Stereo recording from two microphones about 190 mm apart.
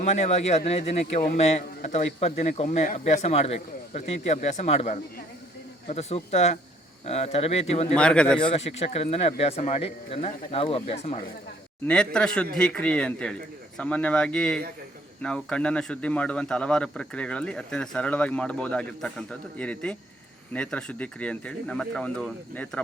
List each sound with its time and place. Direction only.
0.4 s speech: 35° left (ahead or behind)
7.9 s speech: 5° left (ahead or behind)
8.4 s speech: 30° left (ahead or behind)
11.9 s speech: 5° left (ahead or behind)